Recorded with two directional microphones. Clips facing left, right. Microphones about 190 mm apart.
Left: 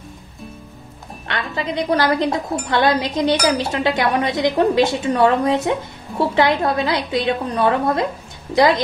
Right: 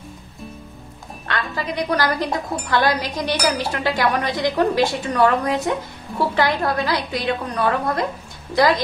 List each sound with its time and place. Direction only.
1.2 s a woman's voice: 20° left (ahead or behind)